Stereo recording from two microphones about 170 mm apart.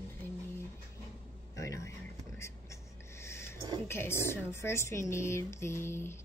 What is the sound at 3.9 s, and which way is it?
A woman's voice, 15° left (ahead or behind).